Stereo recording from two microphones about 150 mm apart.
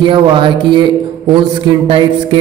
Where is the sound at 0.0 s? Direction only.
35° right (ahead or behind).